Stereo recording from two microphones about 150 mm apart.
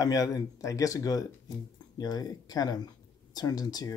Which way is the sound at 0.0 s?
25° left (ahead or behind).